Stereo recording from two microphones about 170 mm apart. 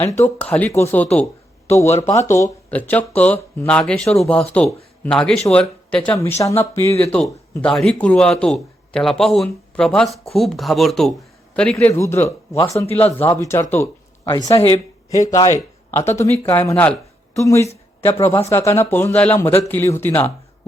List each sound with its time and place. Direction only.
0.0 s a man's voice: 10° left (ahead or behind)
14.6 s speech: 35° left (ahead or behind)
15.2 s speech: 20° left (ahead or behind)